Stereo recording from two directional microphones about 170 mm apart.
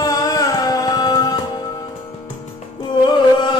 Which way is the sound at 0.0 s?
20° left (ahead or behind).